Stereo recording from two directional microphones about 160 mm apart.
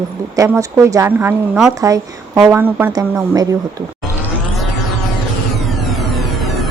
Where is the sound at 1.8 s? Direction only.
20° right (ahead or behind).